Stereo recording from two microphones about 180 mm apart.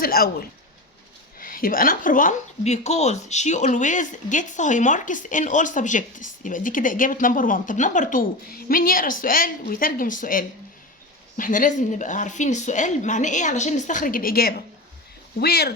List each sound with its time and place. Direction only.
0.0 s a woman's voice: 60° left (ahead or behind)